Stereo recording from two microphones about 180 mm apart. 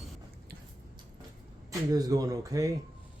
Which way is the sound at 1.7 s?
20° right (ahead or behind).